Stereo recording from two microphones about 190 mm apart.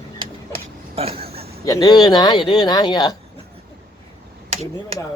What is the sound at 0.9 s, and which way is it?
Vehicle, 30° right (ahead or behind).